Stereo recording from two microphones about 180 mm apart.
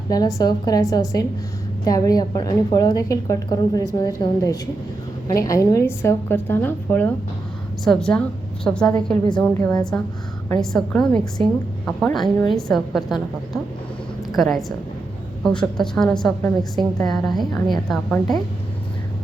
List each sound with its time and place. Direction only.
0.1 s a woman's voice: 20° left (ahead or behind); by 13.1 s centre (ahead or behind)
14.3 s a woman's voice: centre (ahead or behind)